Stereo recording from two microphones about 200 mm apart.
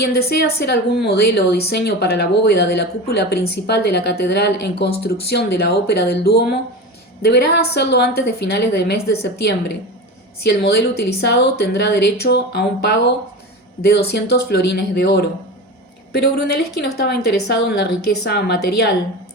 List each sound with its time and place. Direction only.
0.0 s a woman's voice: 50° left (ahead or behind)